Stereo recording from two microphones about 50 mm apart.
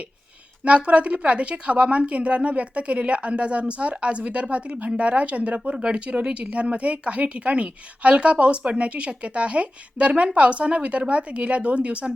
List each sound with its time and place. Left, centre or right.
0.6 s speech: right